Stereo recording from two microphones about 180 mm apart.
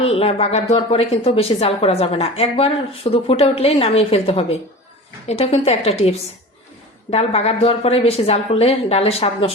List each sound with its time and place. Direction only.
0.0 s a woman's voice: 35° left (ahead or behind)